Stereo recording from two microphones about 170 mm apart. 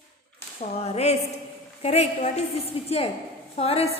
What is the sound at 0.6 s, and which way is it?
Speech, 40° left (ahead or behind).